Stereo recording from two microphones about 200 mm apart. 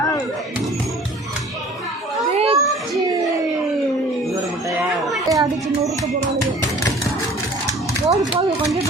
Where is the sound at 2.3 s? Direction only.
30° right (ahead or behind).